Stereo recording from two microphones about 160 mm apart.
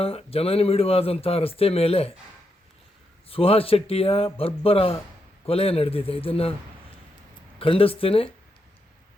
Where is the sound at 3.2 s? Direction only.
35° left (ahead or behind).